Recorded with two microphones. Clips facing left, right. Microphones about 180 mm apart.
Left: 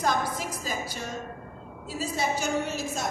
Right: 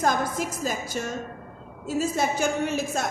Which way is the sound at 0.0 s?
50° right (ahead or behind).